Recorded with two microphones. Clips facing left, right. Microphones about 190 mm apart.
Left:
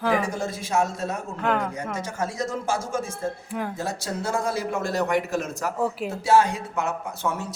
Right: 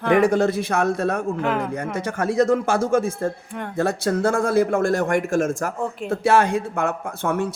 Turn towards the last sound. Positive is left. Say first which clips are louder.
# right 5 dB
turn(degrees=-55)  # may be behind; listen again after turning